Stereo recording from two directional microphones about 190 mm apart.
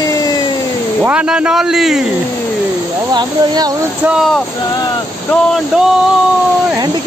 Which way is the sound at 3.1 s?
20° right (ahead or behind).